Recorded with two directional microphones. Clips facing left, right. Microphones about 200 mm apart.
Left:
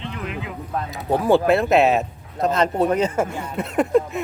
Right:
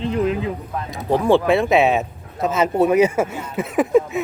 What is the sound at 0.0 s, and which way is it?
Speech, 35° right (ahead or behind).